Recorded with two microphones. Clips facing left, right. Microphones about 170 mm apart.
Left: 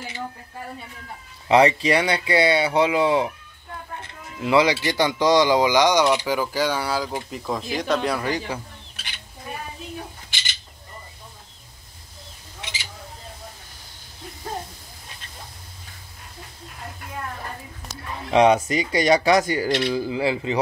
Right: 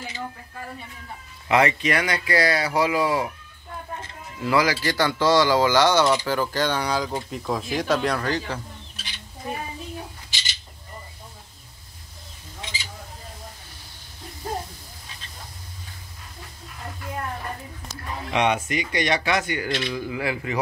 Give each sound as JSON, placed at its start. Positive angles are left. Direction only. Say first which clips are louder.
{"t": 1.5, "sound": "speech", "louder": "left 4 dB", "side_deg": 30}
{"t": 4.4, "sound": "speech", "louder": "left 3 dB", "side_deg": 20}
{"t": 10.3, "sound": "bird", "louder": "even", "side_deg": 55}
{"t": 18.3, "sound": "speech", "louder": "left 6 dB", "side_deg": 35}